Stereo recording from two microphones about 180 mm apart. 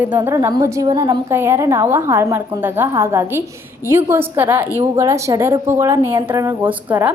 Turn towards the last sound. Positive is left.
turn(degrees=-10)  # may be behind; listen again after turning